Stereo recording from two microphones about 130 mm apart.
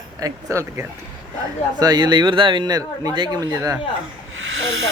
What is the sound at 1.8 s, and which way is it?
Speech, 35° right (ahead or behind).